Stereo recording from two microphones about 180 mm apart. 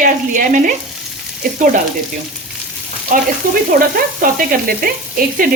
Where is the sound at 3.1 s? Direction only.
50° right (ahead or behind).